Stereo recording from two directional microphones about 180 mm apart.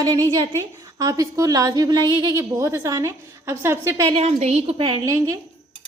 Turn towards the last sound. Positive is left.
turn(degrees=-20)  # may be behind; listen again after turning